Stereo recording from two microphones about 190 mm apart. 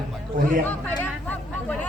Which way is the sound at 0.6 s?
10° left (ahead or behind).